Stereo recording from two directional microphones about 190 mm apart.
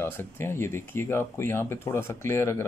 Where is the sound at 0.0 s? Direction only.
10° left (ahead or behind).